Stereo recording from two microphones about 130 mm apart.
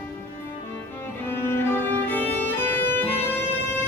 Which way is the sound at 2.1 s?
15° left (ahead or behind).